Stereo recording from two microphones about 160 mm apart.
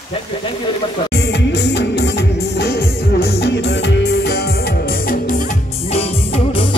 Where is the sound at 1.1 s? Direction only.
90° left; by 5.5 s 55° left (ahead or behind).